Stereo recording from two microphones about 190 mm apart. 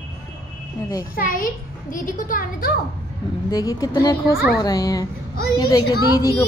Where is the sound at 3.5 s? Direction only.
20° left (ahead or behind).